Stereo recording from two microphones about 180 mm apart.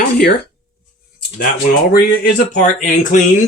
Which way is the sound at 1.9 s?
55° left (ahead or behind).